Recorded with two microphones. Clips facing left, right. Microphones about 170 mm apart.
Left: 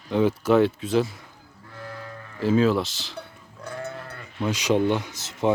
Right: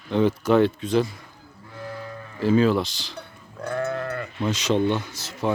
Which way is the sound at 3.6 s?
65° right (ahead or behind).